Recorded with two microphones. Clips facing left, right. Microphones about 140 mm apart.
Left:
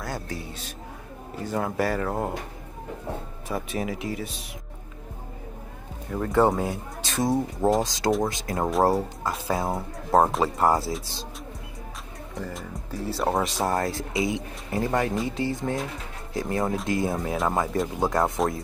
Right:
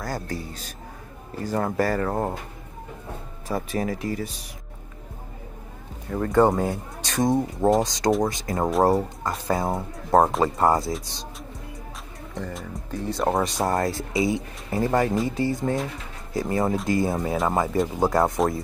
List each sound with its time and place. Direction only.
0.0 s a man's voice: centre (ahead or behind)
1.4 s speech: centre (ahead or behind)
3.4 s speech: centre (ahead or behind)
6.0 s speech: centre (ahead or behind)
12.4 s speech: centre (ahead or behind)